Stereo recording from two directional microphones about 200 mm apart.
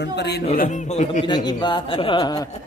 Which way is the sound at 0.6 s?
35° left (ahead or behind).